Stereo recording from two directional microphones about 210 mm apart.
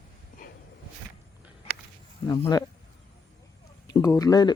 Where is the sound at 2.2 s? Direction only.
20° left (ahead or behind).